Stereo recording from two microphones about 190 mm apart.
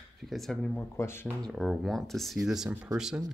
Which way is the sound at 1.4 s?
Centre (ahead or behind).